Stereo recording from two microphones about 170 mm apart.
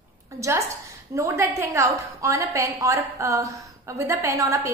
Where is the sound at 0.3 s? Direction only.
20° right (ahead or behind).